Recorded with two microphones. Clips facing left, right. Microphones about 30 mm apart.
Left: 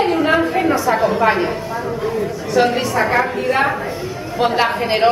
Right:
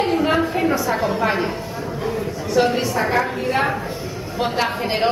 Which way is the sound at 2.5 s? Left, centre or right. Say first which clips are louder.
Left 2 dB; centre.